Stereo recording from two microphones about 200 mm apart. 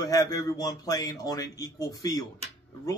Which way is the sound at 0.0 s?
20° left (ahead or behind).